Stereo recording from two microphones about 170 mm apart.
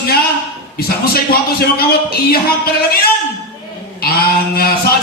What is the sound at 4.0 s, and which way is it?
Speech, 65° left (ahead or behind).